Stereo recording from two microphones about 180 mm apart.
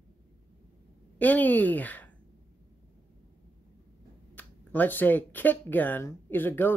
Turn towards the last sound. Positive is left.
turn(degrees=10)  # may be behind; listen again after turning